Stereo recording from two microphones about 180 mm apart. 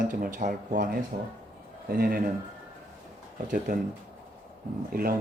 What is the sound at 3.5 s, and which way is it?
Speech, 50° right (ahead or behind).